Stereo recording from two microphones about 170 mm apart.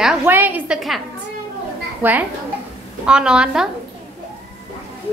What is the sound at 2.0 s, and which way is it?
A woman's voice, 10° right (ahead or behind).